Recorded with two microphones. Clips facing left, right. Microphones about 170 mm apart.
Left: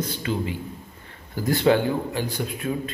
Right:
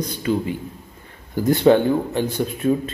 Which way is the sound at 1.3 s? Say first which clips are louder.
Right 5 dB; 20° right (ahead or behind).